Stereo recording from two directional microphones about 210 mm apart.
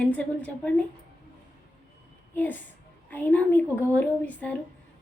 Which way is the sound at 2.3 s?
10° left (ahead or behind).